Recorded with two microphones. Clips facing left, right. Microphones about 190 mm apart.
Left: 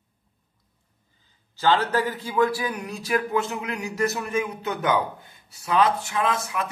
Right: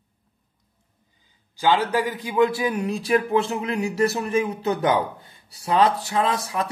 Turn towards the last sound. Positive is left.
turn(degrees=-35)  # may be behind; listen again after turning